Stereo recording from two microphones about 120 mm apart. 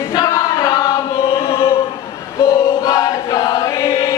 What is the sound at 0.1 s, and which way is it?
Choir, 30° left (ahead or behind).